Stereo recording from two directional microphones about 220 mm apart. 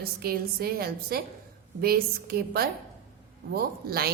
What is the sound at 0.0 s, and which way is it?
A woman's voice, 45° right (ahead or behind).